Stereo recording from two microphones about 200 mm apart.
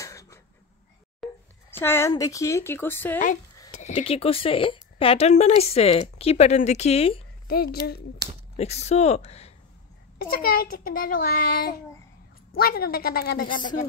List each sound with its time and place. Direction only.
0.0 s a sound: 15° left (ahead or behind)
1.2 s a sound: centre (ahead or behind)
1.7 s speech: 10° left (ahead or behind)
3.7 s speech: 30° left (ahead or behind)
7.4 s a child's voice: 50° left (ahead or behind)
8.5 s speech: 30° left (ahead or behind)
10.1 s a child's voice: 50° left (ahead or behind)